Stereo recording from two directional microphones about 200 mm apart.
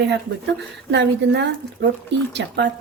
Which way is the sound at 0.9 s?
60° right (ahead or behind).